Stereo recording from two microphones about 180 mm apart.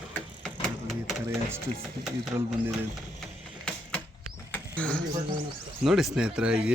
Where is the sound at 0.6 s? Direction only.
Centre (ahead or behind).